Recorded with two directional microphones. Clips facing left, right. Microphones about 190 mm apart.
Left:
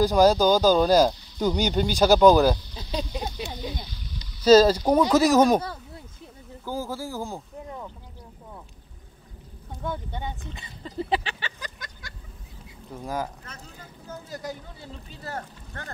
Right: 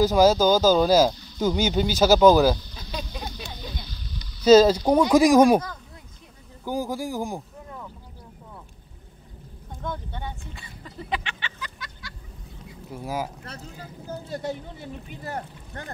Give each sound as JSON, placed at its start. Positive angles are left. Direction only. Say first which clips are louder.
{"t": 0.0, "sound": "speech", "louder": "right 1 dB", "side_deg": -5}
{"t": 2.7, "sound": "a sound", "louder": "left 3 dB", "side_deg": 30}
{"t": 3.0, "sound": "a sound", "louder": "left 5 dB", "side_deg": 20}
{"t": 4.6, "sound": "speech", "louder": "right 1 dB", "side_deg": 10}
{"t": 4.9, "sound": "speech", "louder": "right 3 dB", "side_deg": -10}
{"t": 6.6, "sound": "speech", "louder": "right 3 dB", "side_deg": -15}
{"t": 9.8, "sound": "a sound", "louder": "left 1 dB", "side_deg": 10}
{"t": 12.9, "sound": "speech", "louder": "right 1 dB", "side_deg": -5}
{"t": 13.4, "sound": "speech", "louder": "right 5 dB", "side_deg": -35}